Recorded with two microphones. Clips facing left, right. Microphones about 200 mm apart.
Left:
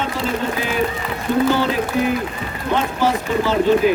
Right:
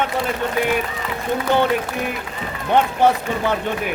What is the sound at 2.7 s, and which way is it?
Speech, 60° right (ahead or behind).